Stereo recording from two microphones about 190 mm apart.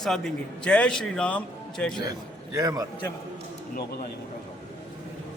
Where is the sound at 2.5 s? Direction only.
20° right (ahead or behind).